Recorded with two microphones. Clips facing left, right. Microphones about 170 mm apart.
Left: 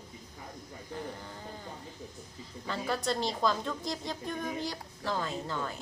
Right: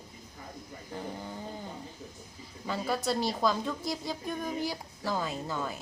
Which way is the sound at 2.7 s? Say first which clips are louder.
Right 2 dB; 10° right (ahead or behind).